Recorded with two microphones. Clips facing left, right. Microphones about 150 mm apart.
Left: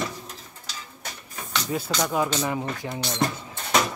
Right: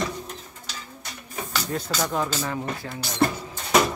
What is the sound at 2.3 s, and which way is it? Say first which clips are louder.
Speech: left 2 dB; 15° left (ahead or behind).